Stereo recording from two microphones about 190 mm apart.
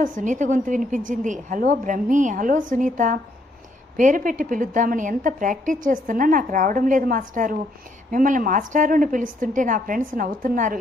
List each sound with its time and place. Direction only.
0.0 s a woman's voice: 45° right (ahead or behind)